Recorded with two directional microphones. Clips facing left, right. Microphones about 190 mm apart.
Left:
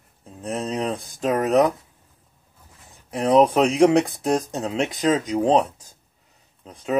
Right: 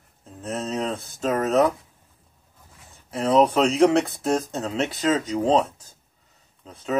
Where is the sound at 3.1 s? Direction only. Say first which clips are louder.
Left 2 dB; 15° left (ahead or behind).